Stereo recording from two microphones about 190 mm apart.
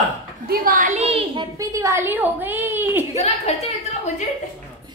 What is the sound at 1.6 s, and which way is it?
A woman's voice, 15° right (ahead or behind).